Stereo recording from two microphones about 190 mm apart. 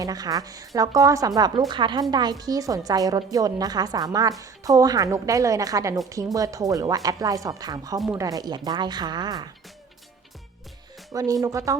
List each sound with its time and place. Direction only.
0.0 s a woman's voice: 20° right (ahead or behind)
11.1 s speech: 20° right (ahead or behind)